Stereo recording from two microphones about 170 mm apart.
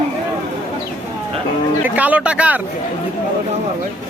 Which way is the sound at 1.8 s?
10° right (ahead or behind).